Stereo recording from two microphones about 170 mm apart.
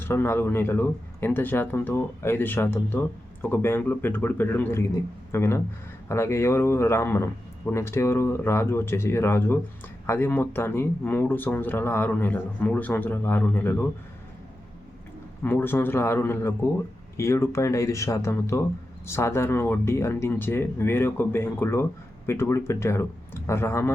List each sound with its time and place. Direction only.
0.0 s speech: 15° left (ahead or behind)
15.4 s speech: 10° left (ahead or behind)